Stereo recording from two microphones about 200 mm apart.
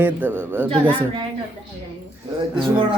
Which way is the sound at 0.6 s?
25° right (ahead or behind).